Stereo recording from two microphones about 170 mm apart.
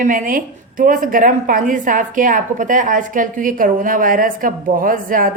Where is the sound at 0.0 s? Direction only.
50° right (ahead or behind).